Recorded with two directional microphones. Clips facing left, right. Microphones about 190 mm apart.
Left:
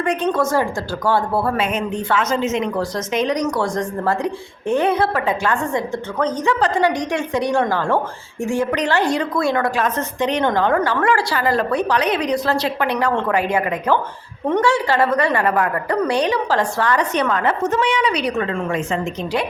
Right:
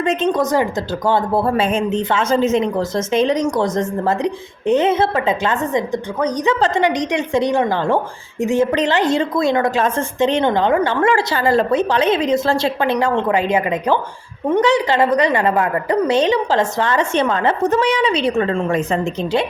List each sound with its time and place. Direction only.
0.0 s a woman's voice: 20° right (ahead or behind)